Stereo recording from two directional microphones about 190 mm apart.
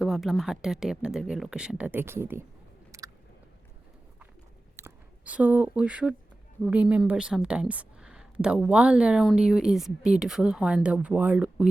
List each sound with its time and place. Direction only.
0.0 s speech: centre (ahead or behind)
2.9 s chewing: 15° right (ahead or behind)
4.8 s speech: 5° right (ahead or behind)